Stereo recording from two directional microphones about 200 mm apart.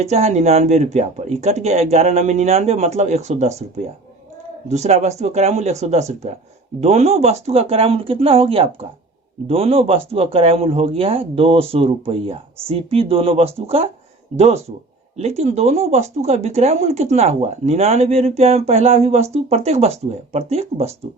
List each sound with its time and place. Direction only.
0.0 s speech: 35° right (ahead or behind)